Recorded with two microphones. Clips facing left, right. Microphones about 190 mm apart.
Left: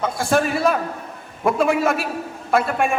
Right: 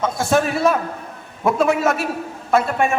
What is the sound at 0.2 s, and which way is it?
A man's voice, centre (ahead or behind).